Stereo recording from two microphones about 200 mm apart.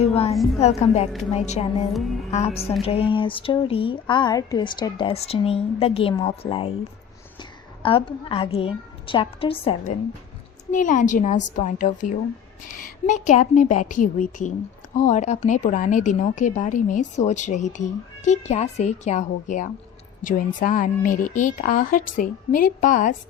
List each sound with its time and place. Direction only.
0.0 s a woman's voice: 30° left (ahead or behind)
7.8 s speech: 25° left (ahead or behind)
10.7 s a woman's voice: 40° left (ahead or behind)